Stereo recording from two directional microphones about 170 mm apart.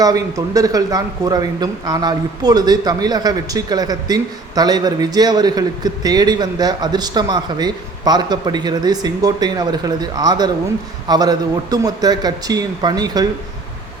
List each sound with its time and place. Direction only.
0.0 s speech: 20° right (ahead or behind)